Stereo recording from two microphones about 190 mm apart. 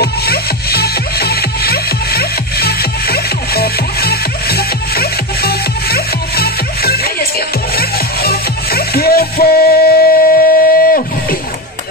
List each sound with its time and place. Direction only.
0.0 s music: 55° left (ahead or behind)